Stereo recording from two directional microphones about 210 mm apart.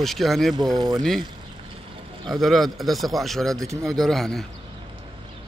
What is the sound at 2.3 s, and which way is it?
Speech, centre (ahead or behind).